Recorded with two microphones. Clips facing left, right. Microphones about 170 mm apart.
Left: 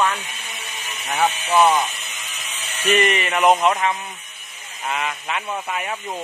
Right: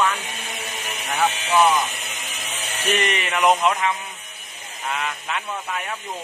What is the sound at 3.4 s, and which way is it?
Speech, 40° left (ahead or behind).